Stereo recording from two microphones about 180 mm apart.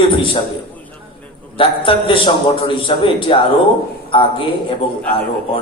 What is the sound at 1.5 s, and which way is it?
A man's voice, 30° left (ahead or behind).